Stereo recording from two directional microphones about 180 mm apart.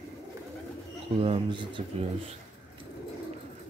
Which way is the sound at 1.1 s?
30° right (ahead or behind).